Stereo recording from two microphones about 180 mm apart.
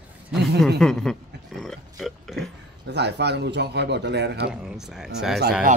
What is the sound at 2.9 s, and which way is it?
Speech, 70° right (ahead or behind).